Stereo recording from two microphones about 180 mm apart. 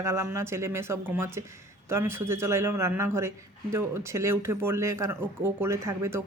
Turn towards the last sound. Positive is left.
turn(degrees=-15)  # may be behind; listen again after turning